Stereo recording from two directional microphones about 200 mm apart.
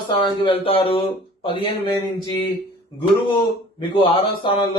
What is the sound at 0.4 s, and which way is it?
A man's voice, 25° left (ahead or behind).